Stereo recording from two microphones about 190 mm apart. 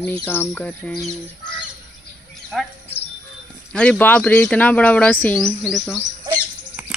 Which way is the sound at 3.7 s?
5° left (ahead or behind).